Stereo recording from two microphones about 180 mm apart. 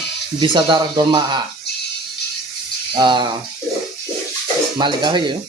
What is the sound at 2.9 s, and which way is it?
Speech, 25° right (ahead or behind).